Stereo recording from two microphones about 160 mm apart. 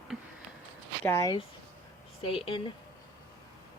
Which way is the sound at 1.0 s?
20° left (ahead or behind).